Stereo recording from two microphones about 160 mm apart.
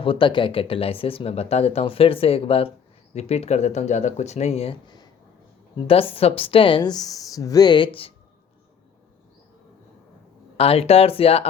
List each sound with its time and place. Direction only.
0.0 s speech: 35° left (ahead or behind)
10.6 s speech: 40° left (ahead or behind)